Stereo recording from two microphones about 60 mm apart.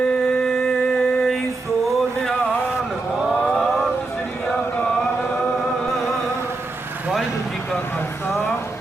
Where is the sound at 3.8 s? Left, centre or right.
Centre.